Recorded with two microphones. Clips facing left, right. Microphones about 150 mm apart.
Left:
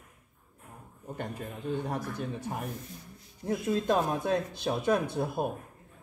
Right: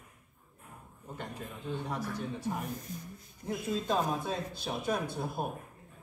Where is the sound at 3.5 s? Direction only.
60° left (ahead or behind).